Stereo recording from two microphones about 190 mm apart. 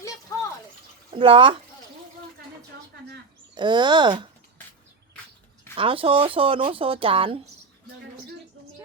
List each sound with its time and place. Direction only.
0.3 s a sound: 15° left (ahead or behind)
1.1 s speech: 25° right (ahead or behind)
3.5 s speech: 25° right (ahead or behind)
5.7 s speech: 30° right (ahead or behind)